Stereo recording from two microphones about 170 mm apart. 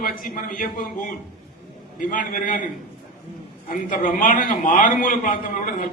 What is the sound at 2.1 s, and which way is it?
Speech, 50° left (ahead or behind).